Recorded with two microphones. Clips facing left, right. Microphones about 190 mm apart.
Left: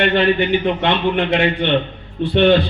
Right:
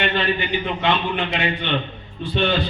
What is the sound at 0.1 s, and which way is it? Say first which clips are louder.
A man's voice: left 7 dB; 60° left (ahead or behind).